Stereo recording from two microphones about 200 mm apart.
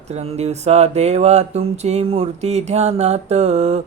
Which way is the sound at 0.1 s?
35° right (ahead or behind).